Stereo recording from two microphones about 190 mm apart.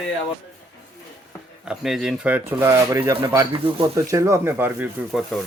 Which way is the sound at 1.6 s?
Centre (ahead or behind).